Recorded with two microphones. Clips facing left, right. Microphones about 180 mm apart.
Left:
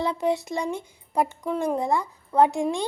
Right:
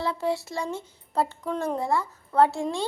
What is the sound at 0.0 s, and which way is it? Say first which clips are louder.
Speech: left 3 dB; 20° left (ahead or behind).